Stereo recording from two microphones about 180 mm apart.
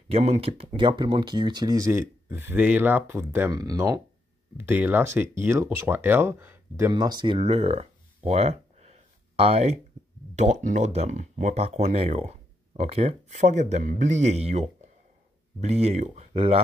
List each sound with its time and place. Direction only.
0.1 s speech: 35° right (ahead or behind); by 6.9 s 15° right (ahead or behind)
6.9 s speech: 25° right (ahead or behind)
7.3 s a sound: 35° right (ahead or behind)
10.3 s speech: 40° right (ahead or behind)